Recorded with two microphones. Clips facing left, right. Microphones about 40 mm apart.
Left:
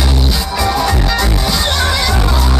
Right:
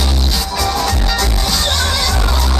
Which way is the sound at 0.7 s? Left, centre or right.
Centre.